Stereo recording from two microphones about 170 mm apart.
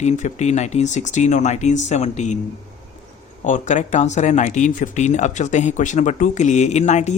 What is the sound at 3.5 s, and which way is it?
A man's voice, 45° left (ahead or behind).